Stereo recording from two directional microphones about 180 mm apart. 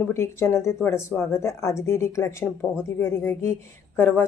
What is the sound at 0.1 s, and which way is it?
Speech, 15° left (ahead or behind).